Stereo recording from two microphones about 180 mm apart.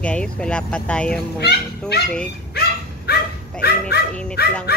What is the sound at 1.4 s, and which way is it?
Speech, 65° left (ahead or behind).